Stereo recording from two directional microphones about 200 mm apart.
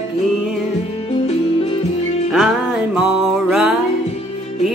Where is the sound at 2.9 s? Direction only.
5° right (ahead or behind).